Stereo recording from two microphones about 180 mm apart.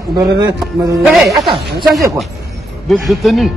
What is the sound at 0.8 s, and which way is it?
Speech, 15° right (ahead or behind).